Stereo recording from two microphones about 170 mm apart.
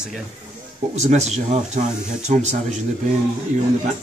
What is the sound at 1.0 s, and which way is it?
Speech, 40° right (ahead or behind).